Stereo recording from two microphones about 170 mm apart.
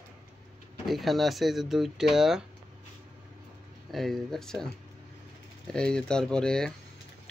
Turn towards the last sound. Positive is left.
turn(degrees=5)  # may be behind; listen again after turning